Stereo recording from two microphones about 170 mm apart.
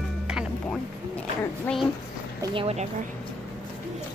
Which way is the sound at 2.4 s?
30° right (ahead or behind).